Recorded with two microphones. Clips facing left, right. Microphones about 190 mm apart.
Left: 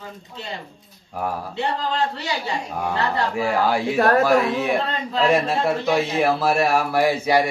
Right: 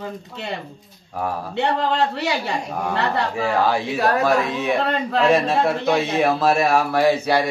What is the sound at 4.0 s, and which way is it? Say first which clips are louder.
Speech: left 4 dB; 50° left (ahead or behind).